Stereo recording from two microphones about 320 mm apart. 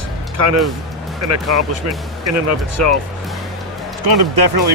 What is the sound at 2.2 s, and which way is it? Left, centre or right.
Speech, right.